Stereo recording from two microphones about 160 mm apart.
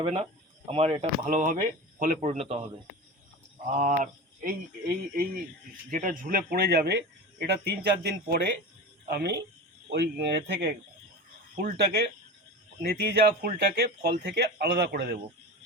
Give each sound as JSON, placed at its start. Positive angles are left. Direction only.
{"t": 0.0, "sound": "speech", "side_deg": -40}
{"t": 2.2, "sound": "a man's voice", "side_deg": -40}
{"t": 3.7, "sound": "speech", "side_deg": -50}
{"t": 5.9, "sound": "speech", "side_deg": -60}
{"t": 9.9, "sound": "speech", "side_deg": -90}
{"t": 11.5, "sound": "speech", "side_deg": -60}